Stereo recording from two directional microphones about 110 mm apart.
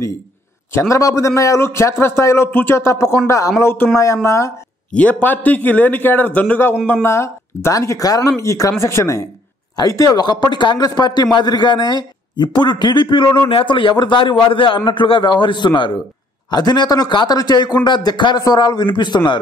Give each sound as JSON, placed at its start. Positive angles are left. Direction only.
{"t": 0.7, "sound": "a man's voice", "side_deg": 25}
{"t": 4.9, "sound": "a man's voice", "side_deg": 15}